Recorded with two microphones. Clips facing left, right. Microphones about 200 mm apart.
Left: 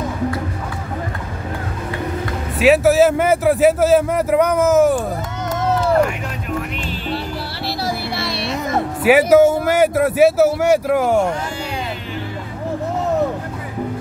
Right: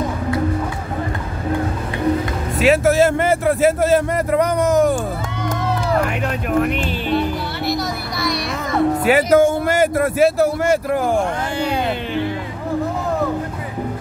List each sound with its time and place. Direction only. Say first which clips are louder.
2.6 s a man's voice: left 2 dB; centre (ahead or behind)
7.1 s music: right 6 dB; 30° left (ahead or behind)
9.0 s a man's voice: left 4 dB; 5° left (ahead or behind)